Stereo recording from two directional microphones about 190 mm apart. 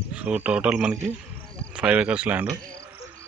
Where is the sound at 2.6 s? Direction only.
20° right (ahead or behind).